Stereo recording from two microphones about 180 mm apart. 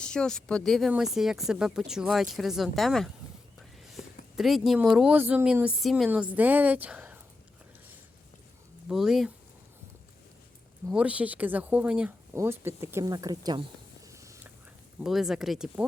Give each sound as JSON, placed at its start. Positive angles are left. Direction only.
{"t": 0.0, "sound": "speech", "side_deg": 5}
{"t": 4.4, "sound": "speech", "side_deg": 0}
{"t": 8.9, "sound": "speech", "side_deg": 0}
{"t": 10.9, "sound": "speech", "side_deg": -5}
{"t": 14.1, "sound": "whispering", "side_deg": -15}
{"t": 15.0, "sound": "speech", "side_deg": 0}